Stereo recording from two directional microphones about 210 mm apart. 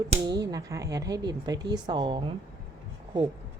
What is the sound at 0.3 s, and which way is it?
A woman's voice, 15° right (ahead or behind).